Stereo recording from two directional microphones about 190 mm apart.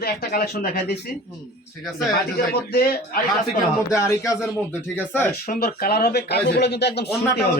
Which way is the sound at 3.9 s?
15° left (ahead or behind).